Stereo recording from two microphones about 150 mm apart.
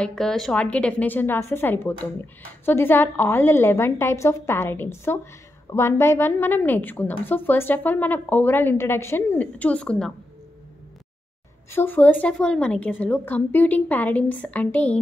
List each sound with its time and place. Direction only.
0.0 s a woman's voice: 5° left (ahead or behind)
11.7 s a woman's voice: 15° left (ahead or behind)